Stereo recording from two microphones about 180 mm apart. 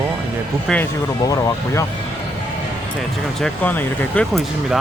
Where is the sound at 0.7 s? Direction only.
Centre (ahead or behind).